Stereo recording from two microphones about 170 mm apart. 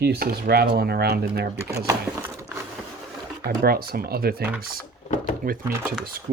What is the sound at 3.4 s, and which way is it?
Speech, 60° right (ahead or behind).